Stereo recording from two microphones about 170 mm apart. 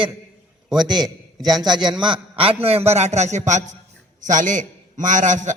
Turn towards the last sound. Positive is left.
turn(degrees=-45)  # may be behind; listen again after turning